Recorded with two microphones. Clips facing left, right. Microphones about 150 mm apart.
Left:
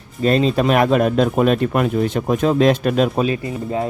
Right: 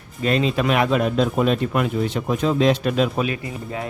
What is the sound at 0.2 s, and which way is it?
Speech, 40° left (ahead or behind).